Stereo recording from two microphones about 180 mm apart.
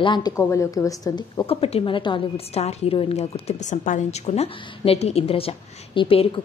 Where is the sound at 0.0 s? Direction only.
25° left (ahead or behind).